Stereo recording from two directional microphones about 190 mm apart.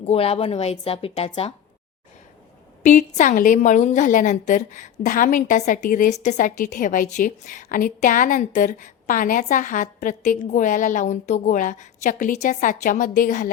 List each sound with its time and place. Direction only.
0.0 s speech: 30° left (ahead or behind)
2.8 s a woman's voice: 40° left (ahead or behind)